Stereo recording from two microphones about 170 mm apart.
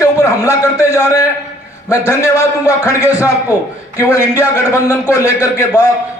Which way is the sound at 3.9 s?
20° left (ahead or behind).